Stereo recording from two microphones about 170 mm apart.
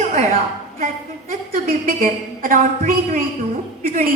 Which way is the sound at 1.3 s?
50° right (ahead or behind).